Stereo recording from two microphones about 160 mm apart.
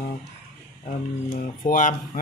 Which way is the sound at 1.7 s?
55° left (ahead or behind).